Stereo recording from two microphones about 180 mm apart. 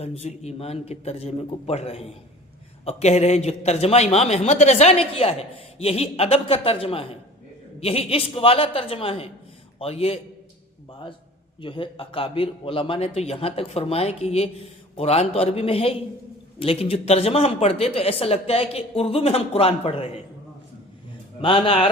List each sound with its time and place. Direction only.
0.0 s a man's voice: 35° left (ahead or behind)
11.6 s a man's voice: 30° left (ahead or behind)
21.4 s a man's voice: 30° left (ahead or behind)